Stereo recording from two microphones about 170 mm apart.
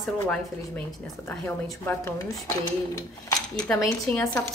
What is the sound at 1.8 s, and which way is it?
Speech, 15° left (ahead or behind).